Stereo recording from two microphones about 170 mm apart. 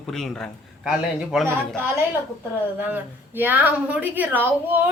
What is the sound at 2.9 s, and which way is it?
A woman's voice, 10° right (ahead or behind).